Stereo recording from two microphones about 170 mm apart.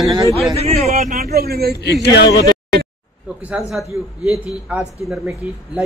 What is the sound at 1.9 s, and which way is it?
Speech, 85° left.